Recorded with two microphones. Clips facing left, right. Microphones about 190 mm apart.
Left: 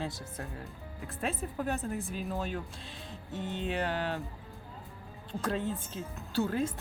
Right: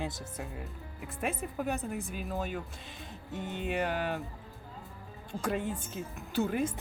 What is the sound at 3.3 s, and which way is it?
Speech, 15° right (ahead or behind).